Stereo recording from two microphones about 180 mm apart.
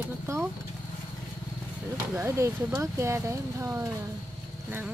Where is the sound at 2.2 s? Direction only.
15° right (ahead or behind).